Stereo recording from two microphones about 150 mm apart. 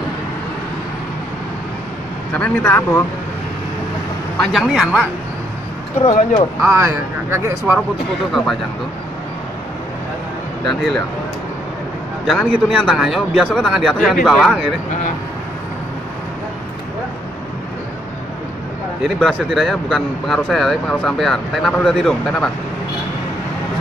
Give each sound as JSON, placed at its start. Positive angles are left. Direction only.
{"t": 2.3, "sound": "speech", "side_deg": 10}
{"t": 4.4, "sound": "speech", "side_deg": 0}
{"t": 6.6, "sound": "speech", "side_deg": -20}
{"t": 10.7, "sound": "speech", "side_deg": 0}
{"t": 12.3, "sound": "speech", "side_deg": -5}
{"t": 19.0, "sound": "speech", "side_deg": 0}